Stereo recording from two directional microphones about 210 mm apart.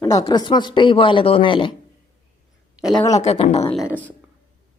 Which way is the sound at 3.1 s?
30° left (ahead or behind).